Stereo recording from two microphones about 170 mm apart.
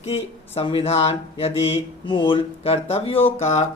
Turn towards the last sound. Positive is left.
turn(degrees=40)  # may be behind; listen again after turning